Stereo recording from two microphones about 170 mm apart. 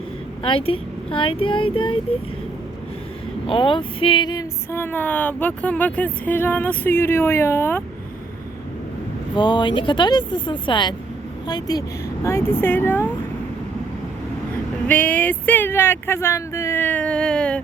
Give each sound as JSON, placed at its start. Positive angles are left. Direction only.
{"t": 0.4, "sound": "speech", "side_deg": 35}
{"t": 3.4, "sound": "speech", "side_deg": 30}
{"t": 9.3, "sound": "speech", "side_deg": 25}
{"t": 12.2, "sound": "speech", "side_deg": 15}
{"t": 14.8, "sound": "speech", "side_deg": 10}